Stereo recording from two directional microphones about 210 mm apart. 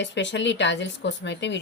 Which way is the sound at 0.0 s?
60° left (ahead or behind).